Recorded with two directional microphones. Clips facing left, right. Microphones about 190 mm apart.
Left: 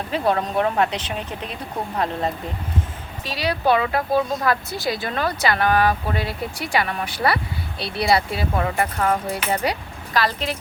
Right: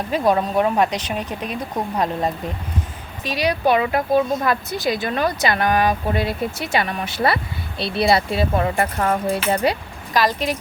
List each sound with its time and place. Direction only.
0.1 s speech: 15° right (ahead or behind)
3.2 s speech: 15° right (ahead or behind)
10.2 s speech: 15° right (ahead or behind)